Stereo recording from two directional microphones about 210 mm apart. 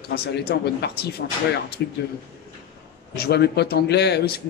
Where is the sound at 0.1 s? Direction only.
50° left (ahead or behind).